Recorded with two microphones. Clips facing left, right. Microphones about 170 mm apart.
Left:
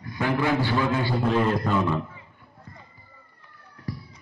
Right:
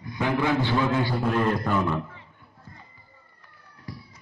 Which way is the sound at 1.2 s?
5° left (ahead or behind).